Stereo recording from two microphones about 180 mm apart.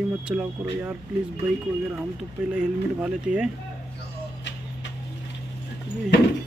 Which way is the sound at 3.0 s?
5° right (ahead or behind).